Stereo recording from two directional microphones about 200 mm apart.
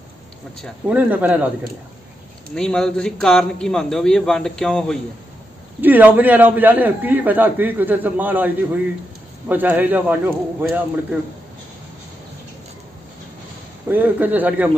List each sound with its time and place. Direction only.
0.6 s a man's voice: 5° left (ahead or behind)
0.9 s a man's voice: 5° right (ahead or behind)
2.5 s a man's voice: 5° left (ahead or behind)
5.8 s a man's voice: 10° right (ahead or behind)
13.8 s a man's voice: 10° right (ahead or behind)